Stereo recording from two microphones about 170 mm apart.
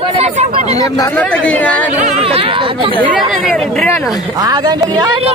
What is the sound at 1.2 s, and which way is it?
Speech, 5° left (ahead or behind).